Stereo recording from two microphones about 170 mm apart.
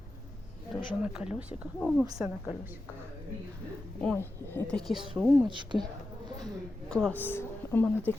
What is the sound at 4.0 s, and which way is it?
A woman's voice, 10° left (ahead or behind).